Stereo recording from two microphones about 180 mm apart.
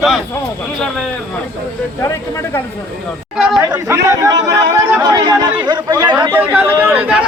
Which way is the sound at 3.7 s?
15° right (ahead or behind).